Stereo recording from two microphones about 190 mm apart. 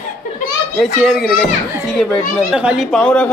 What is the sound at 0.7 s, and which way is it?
Speech, centre (ahead or behind).